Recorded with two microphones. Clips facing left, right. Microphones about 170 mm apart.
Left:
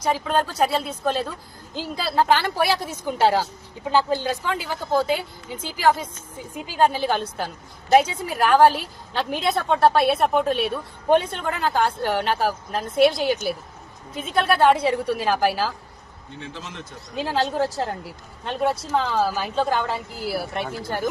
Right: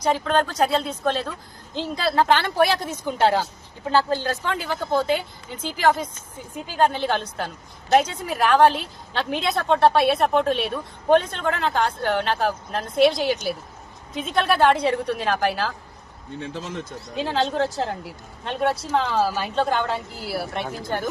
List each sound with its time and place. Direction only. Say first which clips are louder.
0.0 s a woman's voice: right 1 dB; 5° left (ahead or behind)
16.4 s speech: right 5 dB; 40° right (ahead or behind)
17.2 s a woman's voice: even; centre (ahead or behind)